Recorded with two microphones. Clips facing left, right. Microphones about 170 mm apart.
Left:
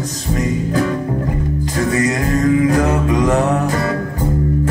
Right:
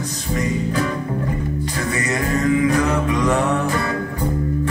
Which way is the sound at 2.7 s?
40° left (ahead or behind).